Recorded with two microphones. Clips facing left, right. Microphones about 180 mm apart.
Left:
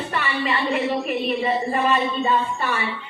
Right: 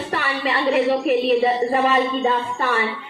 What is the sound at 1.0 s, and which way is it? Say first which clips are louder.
Speech: right 6 dB; 80° right.